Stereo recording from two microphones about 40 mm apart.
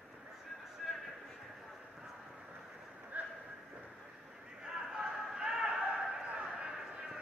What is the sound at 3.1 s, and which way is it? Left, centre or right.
Vehicle, right.